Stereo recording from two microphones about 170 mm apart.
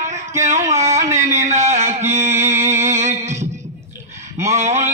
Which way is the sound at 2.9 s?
40° right (ahead or behind).